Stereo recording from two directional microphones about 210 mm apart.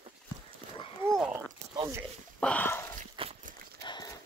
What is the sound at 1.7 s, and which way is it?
Zipper, 20° right (ahead or behind).